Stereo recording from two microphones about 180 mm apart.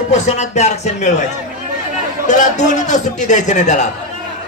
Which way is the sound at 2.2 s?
40° left (ahead or behind).